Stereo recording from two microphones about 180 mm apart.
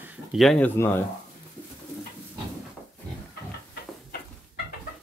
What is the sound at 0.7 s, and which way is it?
Speech, 10° left (ahead or behind).